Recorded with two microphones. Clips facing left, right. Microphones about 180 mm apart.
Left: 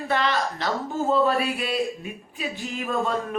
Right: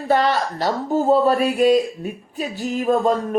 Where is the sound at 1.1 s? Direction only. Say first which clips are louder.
Right 4 dB; 40° right (ahead or behind).